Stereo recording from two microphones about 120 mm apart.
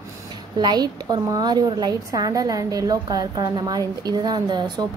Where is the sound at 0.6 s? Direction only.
35° right (ahead or behind).